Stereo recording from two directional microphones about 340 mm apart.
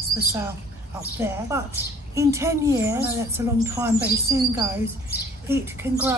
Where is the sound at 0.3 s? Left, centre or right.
Centre.